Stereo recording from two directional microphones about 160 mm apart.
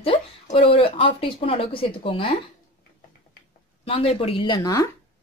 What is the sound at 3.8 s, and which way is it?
Speech, 35° left (ahead or behind).